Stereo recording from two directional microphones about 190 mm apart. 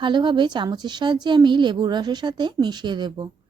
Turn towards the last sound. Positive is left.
turn(degrees=-25)  # may be behind; listen again after turning